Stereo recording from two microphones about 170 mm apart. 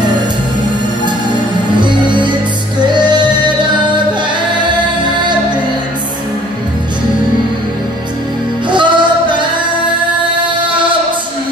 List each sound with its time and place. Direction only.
1.8 s music: 25° right (ahead or behind)
8.6 s music: 25° right (ahead or behind)